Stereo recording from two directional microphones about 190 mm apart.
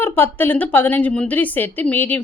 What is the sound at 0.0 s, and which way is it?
Speech, 10° left (ahead or behind).